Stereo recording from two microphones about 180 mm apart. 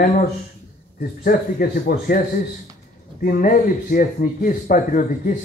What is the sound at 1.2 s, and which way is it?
Speech, 55° left (ahead or behind).